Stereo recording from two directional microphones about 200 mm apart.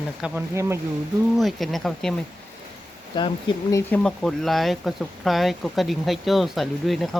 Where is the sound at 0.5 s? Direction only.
15° right (ahead or behind).